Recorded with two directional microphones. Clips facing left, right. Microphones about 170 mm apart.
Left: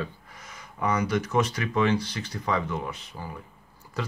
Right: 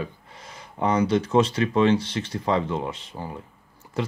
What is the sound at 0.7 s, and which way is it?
Speech, 30° right (ahead or behind).